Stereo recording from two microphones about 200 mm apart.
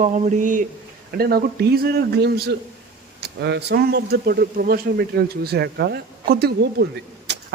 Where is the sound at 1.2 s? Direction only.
50° right (ahead or behind).